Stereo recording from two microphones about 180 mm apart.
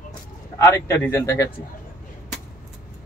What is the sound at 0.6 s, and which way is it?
Speech, 15° left (ahead or behind).